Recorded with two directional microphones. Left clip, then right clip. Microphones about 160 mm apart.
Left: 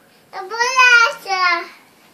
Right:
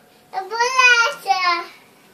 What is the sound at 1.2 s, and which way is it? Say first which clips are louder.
Child singing: left 1 dB; 20° left (ahead or behind).